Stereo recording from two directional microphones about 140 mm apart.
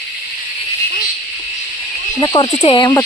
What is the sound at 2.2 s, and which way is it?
Speech, 30° left (ahead or behind).